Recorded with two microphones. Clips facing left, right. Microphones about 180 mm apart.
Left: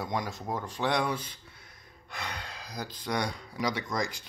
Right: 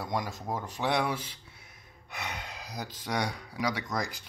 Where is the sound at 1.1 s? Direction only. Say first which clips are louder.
Left 1 dB; 85° right.